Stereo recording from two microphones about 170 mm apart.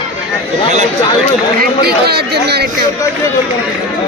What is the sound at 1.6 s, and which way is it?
Speech, 70° right (ahead or behind).